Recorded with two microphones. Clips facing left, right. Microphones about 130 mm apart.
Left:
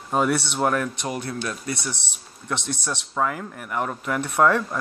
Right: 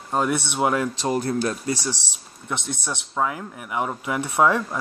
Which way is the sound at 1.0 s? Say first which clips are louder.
Right 6 dB; 30° right (ahead or behind).